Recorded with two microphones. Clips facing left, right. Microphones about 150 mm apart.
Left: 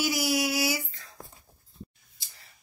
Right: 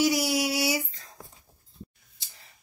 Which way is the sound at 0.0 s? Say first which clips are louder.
Right 3 dB; 30° right (ahead or behind).